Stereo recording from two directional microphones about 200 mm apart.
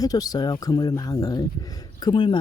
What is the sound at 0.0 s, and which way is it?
Speech, 20° left (ahead or behind).